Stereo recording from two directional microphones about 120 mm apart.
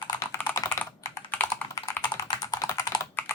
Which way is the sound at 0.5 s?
25° left (ahead or behind).